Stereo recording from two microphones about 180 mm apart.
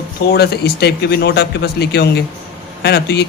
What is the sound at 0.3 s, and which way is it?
A man's voice, 65° left (ahead or behind).